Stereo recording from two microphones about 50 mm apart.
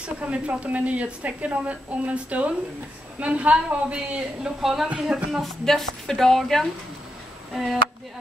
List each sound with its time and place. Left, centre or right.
0.0 s a woman's voice: right
4.6 s speech: centre
5.4 s a woman's voice: centre